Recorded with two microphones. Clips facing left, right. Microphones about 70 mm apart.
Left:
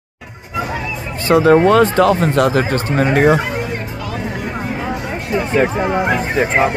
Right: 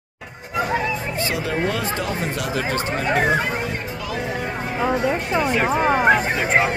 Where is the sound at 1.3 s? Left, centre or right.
Left.